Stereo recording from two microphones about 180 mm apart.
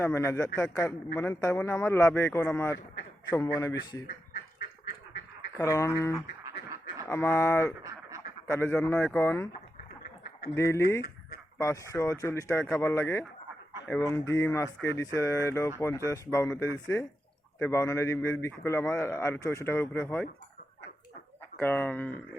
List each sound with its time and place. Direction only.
0.0 s a man's voice: 15° left (ahead or behind)
5.5 s a man's voice: 15° left (ahead or behind)
10.5 s a man's voice: 15° left (ahead or behind)
21.6 s a man's voice: 10° left (ahead or behind)